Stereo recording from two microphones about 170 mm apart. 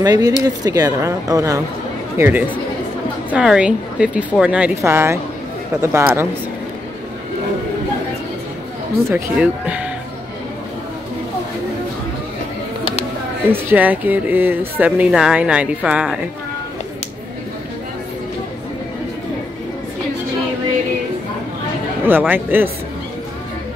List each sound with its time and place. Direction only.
0.0 s speech: 20° right (ahead or behind)
9.1 s speech: 10° right (ahead or behind)
13.5 s speech: 10° right (ahead or behind)
22.0 s speech: 10° right (ahead or behind)